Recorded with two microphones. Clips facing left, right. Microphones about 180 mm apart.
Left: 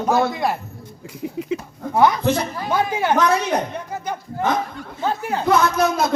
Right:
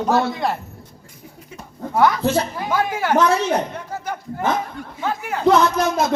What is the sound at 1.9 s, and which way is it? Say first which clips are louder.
A woman's voice: left 1 dB; 20° left (ahead or behind).